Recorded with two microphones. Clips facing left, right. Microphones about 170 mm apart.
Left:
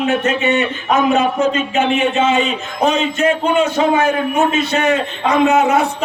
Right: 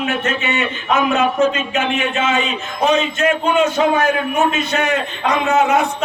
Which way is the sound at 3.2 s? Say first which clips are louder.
Left 1 dB; 30° left (ahead or behind).